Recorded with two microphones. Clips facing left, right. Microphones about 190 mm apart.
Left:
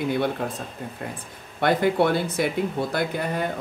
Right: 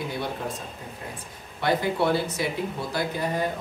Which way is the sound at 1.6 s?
55° left (ahead or behind).